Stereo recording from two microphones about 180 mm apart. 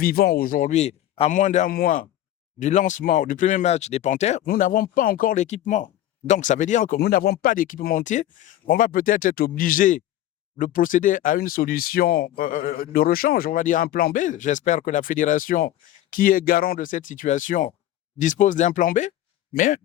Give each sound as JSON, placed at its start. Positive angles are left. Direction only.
{"t": 0.0, "sound": "speech", "side_deg": 55}
{"t": 4.4, "sound": "speech", "side_deg": 50}